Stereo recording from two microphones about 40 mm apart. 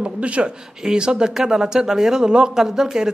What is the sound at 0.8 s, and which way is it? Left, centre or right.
Speech, centre.